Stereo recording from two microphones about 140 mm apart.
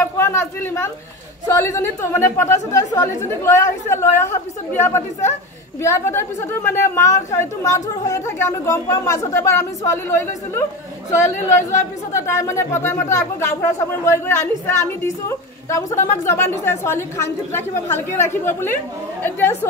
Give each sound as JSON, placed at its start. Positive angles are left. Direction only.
{"t": 0.0, "sound": "a woman's voice", "side_deg": 20}